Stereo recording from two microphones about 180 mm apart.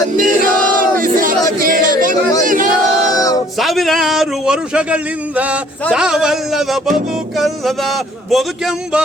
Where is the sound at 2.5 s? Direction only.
50° right (ahead or behind).